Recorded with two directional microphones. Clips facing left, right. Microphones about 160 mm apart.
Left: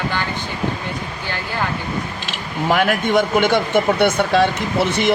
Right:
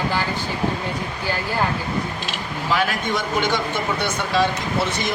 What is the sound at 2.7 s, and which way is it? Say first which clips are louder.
Speech: left 5 dB; 55° left (ahead or behind).